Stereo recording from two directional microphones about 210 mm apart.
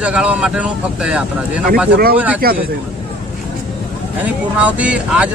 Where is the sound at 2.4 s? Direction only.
45° right (ahead or behind).